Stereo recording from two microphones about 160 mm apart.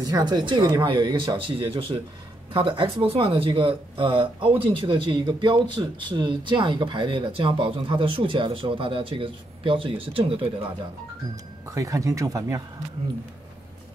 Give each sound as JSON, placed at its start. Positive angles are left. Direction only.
{"t": 0.0, "sound": "speech", "side_deg": -25}
{"t": 11.7, "sound": "speech", "side_deg": -20}